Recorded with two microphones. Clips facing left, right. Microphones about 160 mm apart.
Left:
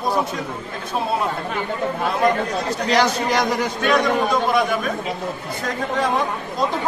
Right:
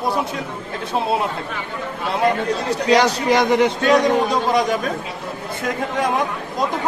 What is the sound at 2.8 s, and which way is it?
A man's voice, 20° right (ahead or behind).